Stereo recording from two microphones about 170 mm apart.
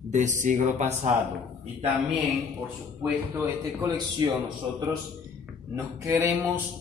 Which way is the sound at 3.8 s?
25° right (ahead or behind).